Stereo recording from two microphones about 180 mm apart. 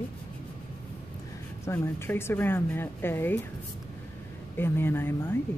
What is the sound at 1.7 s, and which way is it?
Speech, 15° left (ahead or behind).